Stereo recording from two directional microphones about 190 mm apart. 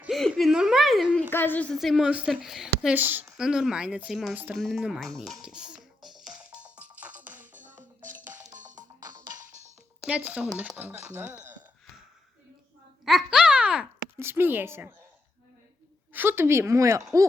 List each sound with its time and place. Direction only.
0.0 s whimper: centre (ahead or behind)
1.3 s a woman's voice: 10° left (ahead or behind); by 5.8 s 5° right (ahead or behind)
6.6 s music: 5° right (ahead or behind)
7.6 s music: 40° right (ahead or behind)
9.0 s music: 20° right (ahead or behind)
10.1 s speech: 5° right (ahead or behind)
13.1 s a child's voice: centre (ahead or behind)
16.1 s speech: 10° right (ahead or behind)